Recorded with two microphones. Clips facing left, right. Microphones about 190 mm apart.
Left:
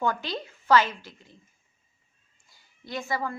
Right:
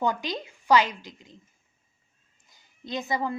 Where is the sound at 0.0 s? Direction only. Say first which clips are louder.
Right 1 dB; 15° right (ahead or behind).